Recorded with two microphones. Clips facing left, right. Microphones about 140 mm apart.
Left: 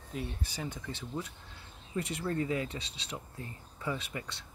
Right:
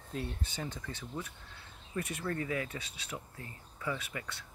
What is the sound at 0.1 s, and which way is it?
Speech, 5° left (ahead or behind).